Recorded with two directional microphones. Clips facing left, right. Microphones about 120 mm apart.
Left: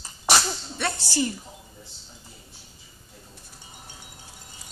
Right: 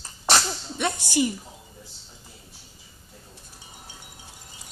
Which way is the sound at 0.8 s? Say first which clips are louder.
Right 3 dB; 20° right (ahead or behind).